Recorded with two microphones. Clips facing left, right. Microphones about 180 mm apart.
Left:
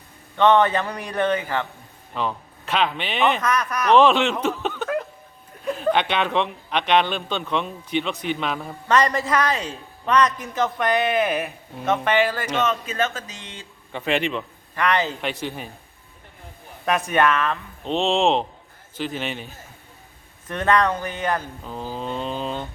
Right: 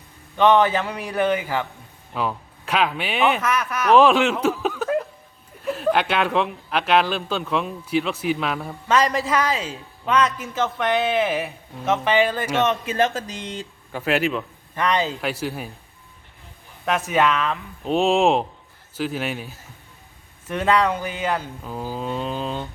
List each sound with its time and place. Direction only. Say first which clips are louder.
0.3 s a man's voice: even; 15° right (ahead or behind)
0.6 s speech: even; 5° right (ahead or behind)
12.1 s speech: right 3 dB; 20° right (ahead or behind)
13.1 s speech: right 7 dB; 35° right (ahead or behind)
13.9 s speech: right 2 dB; 5° right (ahead or behind)
14.8 s speech: even; 15° right (ahead or behind)
15.2 s speech: right 2 dB; 5° right (ahead or behind)
16.8 s speech: even; 5° right (ahead or behind)